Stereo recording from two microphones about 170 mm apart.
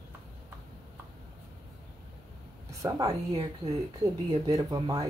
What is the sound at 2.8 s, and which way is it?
Speech, 20° right (ahead or behind).